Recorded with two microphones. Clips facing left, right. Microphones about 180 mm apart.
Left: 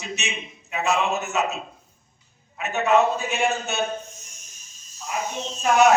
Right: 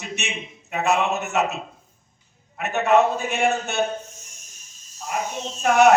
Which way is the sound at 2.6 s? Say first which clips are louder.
Right 1 dB; 60° right (ahead or behind).